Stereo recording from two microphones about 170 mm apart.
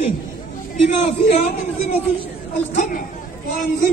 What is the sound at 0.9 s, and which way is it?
Speech, 45° left (ahead or behind).